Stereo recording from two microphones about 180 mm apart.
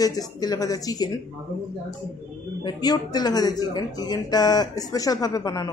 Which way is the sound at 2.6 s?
20° left (ahead or behind).